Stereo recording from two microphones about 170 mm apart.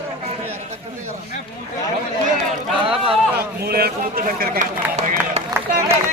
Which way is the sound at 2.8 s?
35° right (ahead or behind).